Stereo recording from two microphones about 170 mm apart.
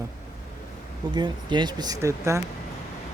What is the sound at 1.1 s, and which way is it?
Speech, 25° right (ahead or behind).